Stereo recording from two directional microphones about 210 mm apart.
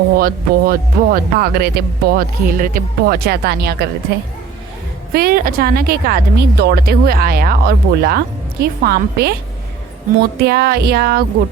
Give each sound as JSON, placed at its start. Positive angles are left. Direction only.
{"t": 0.2, "sound": "speech", "side_deg": -45}
{"t": 5.1, "sound": "speech", "side_deg": -45}
{"t": 10.3, "sound": "speech", "side_deg": -50}